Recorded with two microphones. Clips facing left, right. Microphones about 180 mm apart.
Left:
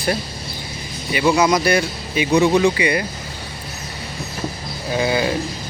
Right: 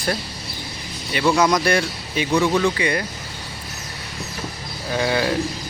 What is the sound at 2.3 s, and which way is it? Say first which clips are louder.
Speech: left 4 dB; 25° left (ahead or behind).